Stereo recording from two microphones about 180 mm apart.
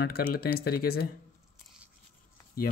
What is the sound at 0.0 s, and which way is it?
Speech, 60° left (ahead or behind).